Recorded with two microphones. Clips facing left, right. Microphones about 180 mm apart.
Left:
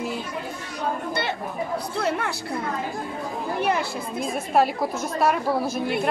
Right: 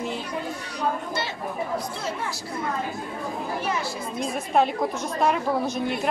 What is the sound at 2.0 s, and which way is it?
Speech, 65° left (ahead or behind).